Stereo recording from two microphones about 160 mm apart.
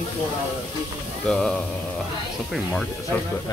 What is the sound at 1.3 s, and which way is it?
Speech, 5° left (ahead or behind).